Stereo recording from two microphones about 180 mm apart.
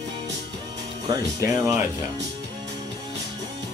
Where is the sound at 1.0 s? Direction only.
20° right (ahead or behind).